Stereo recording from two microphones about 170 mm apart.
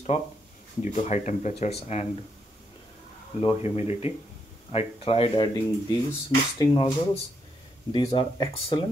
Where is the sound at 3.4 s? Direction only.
35° left (ahead or behind).